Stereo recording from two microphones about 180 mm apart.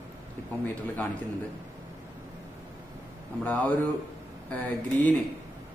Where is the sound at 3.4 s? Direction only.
10° left (ahead or behind).